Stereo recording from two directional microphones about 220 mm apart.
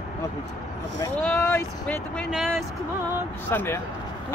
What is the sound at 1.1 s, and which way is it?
Speech, 10° left (ahead or behind).